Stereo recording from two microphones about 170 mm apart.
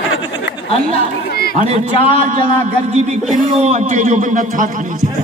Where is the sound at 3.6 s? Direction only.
45° right (ahead or behind).